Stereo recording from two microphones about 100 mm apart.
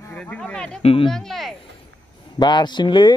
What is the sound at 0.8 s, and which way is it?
Speech, 70° left (ahead or behind).